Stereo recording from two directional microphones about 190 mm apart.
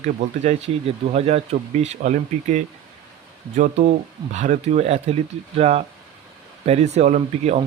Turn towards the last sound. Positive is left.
turn(degrees=-35)  # may be behind; listen again after turning